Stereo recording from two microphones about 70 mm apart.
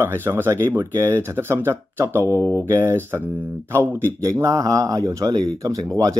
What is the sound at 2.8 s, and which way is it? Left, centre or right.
Speech, right.